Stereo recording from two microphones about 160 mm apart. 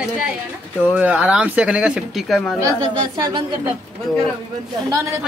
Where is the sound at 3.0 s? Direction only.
30° right (ahead or behind).